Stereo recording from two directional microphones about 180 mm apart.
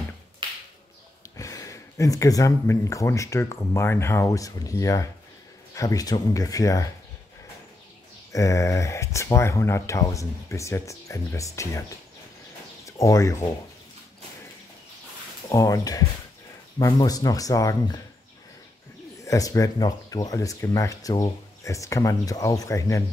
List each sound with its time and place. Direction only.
0.4 s finger snapping: 25° right (ahead or behind)
1.3 s speech: 20° left (ahead or behind)
8.3 s speech: 15° left (ahead or behind)
12.8 s speech: 15° left (ahead or behind)
15.5 s speech: 20° left (ahead or behind)
19.2 s speech: 20° left (ahead or behind)